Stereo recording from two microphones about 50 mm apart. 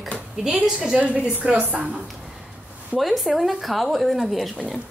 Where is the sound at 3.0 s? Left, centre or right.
Centre.